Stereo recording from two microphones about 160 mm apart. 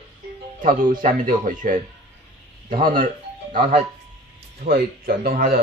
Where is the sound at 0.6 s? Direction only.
60° right (ahead or behind).